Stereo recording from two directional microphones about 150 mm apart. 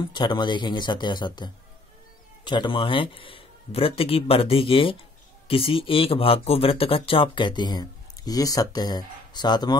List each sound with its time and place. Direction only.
0.1 s speech: 30° left (ahead or behind)